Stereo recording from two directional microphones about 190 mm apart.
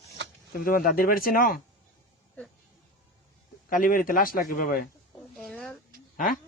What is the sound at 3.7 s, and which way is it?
A man's voice, 45° left (ahead or behind).